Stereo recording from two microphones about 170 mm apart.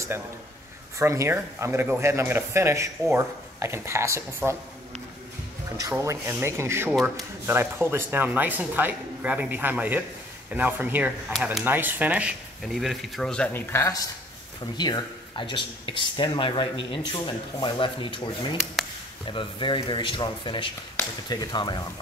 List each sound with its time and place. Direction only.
0.9 s speech: 15° right (ahead or behind)
5.8 s speech: 15° right (ahead or behind); by 21.7 s 25° left (ahead or behind)